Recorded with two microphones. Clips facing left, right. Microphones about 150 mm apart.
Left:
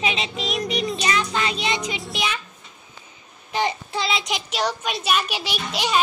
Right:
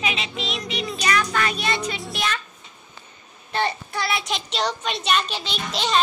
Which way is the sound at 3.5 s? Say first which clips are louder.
Left 1 dB; 15° left (ahead or behind).